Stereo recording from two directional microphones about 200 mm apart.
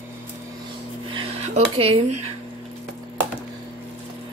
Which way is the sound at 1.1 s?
35° right (ahead or behind).